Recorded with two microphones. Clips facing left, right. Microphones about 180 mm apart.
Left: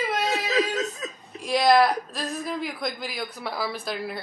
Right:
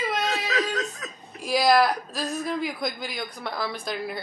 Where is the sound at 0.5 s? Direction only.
25° left (ahead or behind).